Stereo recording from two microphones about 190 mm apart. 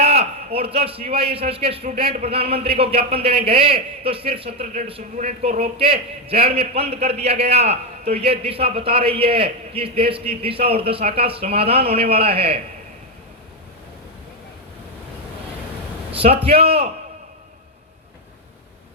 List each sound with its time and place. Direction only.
0.0 s a man's voice: 30° right (ahead or behind)
16.1 s a man's voice: 30° right (ahead or behind)